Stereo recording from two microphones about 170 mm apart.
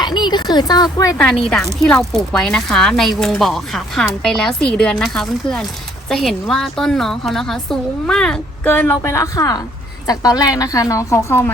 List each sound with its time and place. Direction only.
0.0 s speech: 25° left (ahead or behind)
1.8 s a woman's voice: centre (ahead or behind)